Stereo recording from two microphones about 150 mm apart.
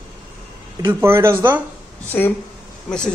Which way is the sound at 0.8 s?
15° right (ahead or behind).